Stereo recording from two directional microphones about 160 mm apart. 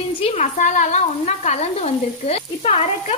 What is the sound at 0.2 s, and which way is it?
Speech, 40° left (ahead or behind).